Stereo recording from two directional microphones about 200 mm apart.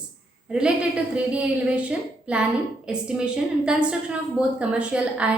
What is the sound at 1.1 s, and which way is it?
Female singing, 5° right (ahead or behind).